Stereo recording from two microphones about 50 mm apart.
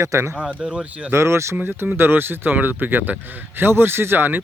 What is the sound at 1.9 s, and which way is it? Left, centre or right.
A man's voice, right.